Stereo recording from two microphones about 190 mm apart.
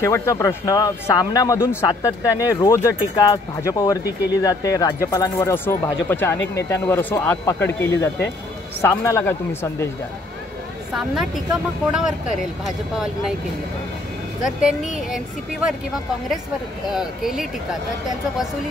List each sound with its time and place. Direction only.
0.0 s speech: 15° left (ahead or behind)
10.9 s speech: centre (ahead or behind)
15.0 s speech: centre (ahead or behind)